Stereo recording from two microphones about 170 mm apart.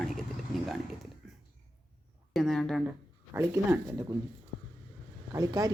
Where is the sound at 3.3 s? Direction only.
15° right (ahead or behind).